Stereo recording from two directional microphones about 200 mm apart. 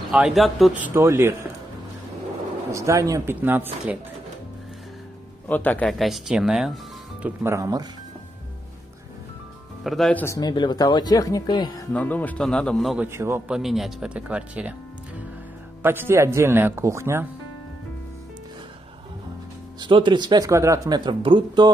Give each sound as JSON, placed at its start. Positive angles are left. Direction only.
{"t": 0.1, "sound": "a man's voice", "side_deg": 0}
{"t": 0.9, "sound": "a man's voice", "side_deg": -15}
{"t": 2.7, "sound": "a man's voice", "side_deg": -15}
{"t": 5.5, "sound": "a man's voice", "side_deg": 10}
{"t": 9.8, "sound": "speech", "side_deg": 5}
{"t": 11.9, "sound": "a man's voice", "side_deg": 10}
{"t": 15.8, "sound": "a man's voice", "side_deg": -10}
{"t": 19.8, "sound": "speech", "side_deg": -25}